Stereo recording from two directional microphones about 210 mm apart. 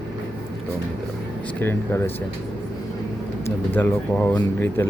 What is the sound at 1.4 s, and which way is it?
Speech, 10° left (ahead or behind).